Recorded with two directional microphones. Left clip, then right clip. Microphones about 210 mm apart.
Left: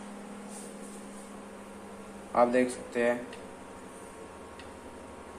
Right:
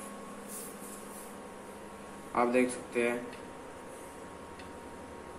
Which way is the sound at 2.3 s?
30° left (ahead or behind).